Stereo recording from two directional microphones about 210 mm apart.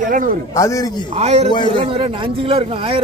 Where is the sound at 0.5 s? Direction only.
15° left (ahead or behind).